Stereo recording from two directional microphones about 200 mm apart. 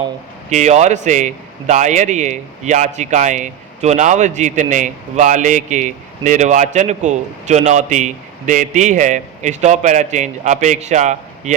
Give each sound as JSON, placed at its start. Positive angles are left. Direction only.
{"t": 0.5, "sound": "a man's voice", "side_deg": -35}